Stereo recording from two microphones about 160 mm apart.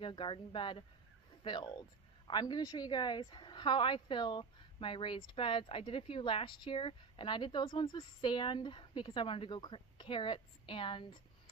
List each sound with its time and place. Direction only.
0.0 s a woman's voice: 30° left (ahead or behind)